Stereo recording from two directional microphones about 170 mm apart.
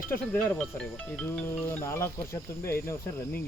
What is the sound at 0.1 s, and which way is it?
Speech, 10° left (ahead or behind).